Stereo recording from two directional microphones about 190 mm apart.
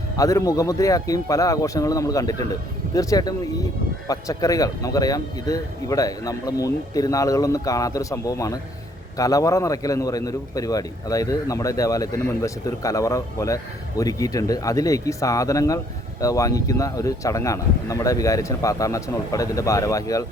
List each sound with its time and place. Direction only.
0.2 s a man's voice: 15° left (ahead or behind)